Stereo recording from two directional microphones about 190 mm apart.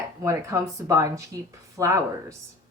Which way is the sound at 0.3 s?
15° right (ahead or behind).